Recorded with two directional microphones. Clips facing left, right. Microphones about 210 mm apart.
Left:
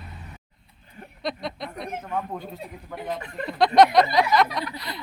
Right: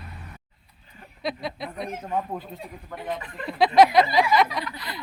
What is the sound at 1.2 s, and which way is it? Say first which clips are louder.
Speech: even; 5° right (ahead or behind).